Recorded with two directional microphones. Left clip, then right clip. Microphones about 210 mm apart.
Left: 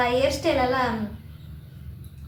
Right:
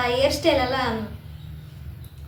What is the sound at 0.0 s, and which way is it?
Speech, centre (ahead or behind).